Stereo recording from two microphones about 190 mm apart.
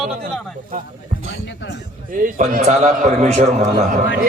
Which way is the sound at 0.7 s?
50° right (ahead or behind).